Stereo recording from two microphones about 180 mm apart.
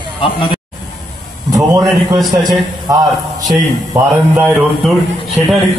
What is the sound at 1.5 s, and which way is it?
A man's voice, 20° right (ahead or behind).